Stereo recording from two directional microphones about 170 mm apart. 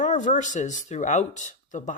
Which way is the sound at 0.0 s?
45° left (ahead or behind).